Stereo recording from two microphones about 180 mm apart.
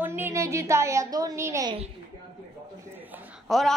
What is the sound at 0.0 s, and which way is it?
A woman's voice, 10° right (ahead or behind).